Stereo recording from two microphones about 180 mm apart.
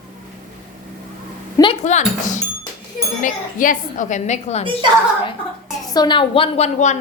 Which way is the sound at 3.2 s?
45° left (ahead or behind).